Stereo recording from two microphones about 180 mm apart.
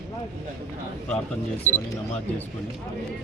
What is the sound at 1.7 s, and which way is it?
Speech, 45° right (ahead or behind).